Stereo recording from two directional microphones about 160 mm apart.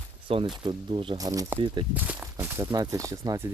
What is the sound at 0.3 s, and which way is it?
Speech, 35° right (ahead or behind).